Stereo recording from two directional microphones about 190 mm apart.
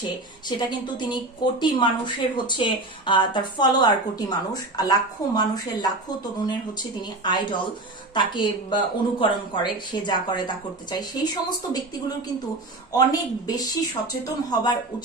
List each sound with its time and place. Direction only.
0.5 s speech: 25° left (ahead or behind)
12.9 s speech: 20° left (ahead or behind)